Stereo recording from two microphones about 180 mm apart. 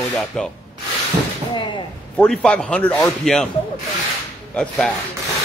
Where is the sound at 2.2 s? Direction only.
5° left (ahead or behind).